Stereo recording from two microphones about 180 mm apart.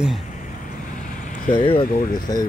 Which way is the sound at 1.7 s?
55° left (ahead or behind).